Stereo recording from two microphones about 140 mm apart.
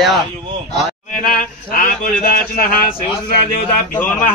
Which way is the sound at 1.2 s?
85° left.